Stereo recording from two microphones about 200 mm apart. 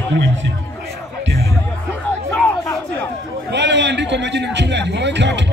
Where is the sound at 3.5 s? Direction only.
60° right (ahead or behind).